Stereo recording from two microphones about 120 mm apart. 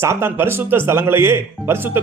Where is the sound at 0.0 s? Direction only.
20° right (ahead or behind).